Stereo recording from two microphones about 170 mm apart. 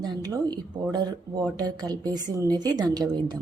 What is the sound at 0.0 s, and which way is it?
Speech, 25° right (ahead or behind).